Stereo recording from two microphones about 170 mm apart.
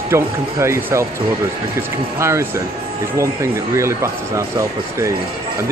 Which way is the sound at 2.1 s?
15° right (ahead or behind).